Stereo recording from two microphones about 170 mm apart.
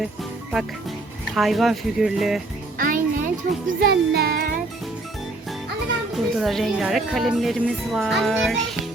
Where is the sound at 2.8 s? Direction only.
50° right (ahead or behind).